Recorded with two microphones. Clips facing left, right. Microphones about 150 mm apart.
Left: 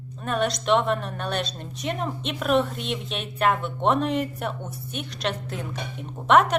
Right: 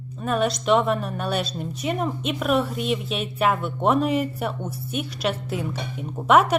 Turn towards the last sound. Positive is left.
turn(degrees=-5)  # may be behind; listen again after turning